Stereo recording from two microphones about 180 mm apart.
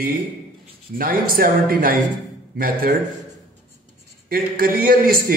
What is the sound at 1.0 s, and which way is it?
Speech, 55° right (ahead or behind).